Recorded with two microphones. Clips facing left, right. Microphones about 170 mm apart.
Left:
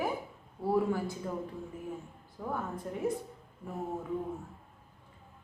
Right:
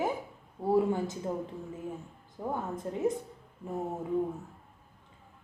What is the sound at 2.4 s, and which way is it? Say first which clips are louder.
Speech: right 2 dB; 25° right (ahead or behind).